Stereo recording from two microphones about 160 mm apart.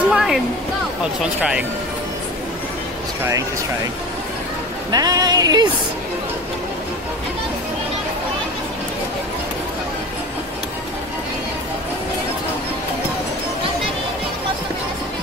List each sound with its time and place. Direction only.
0.1 s speech: 5° right (ahead or behind)
1.4 s speech: 5° right (ahead or behind)
4.9 s music: 25° right (ahead or behind)